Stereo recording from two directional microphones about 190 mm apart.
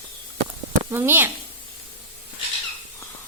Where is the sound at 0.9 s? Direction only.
10° right (ahead or behind).